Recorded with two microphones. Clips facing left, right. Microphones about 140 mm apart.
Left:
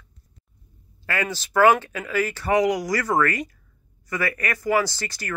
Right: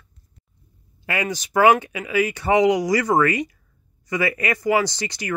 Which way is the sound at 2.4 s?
25° right (ahead or behind).